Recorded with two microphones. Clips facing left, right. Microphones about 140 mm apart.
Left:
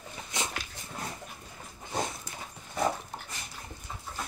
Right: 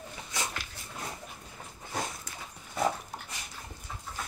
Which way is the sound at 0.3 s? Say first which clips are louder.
Left 1 dB; 20° left (ahead or behind).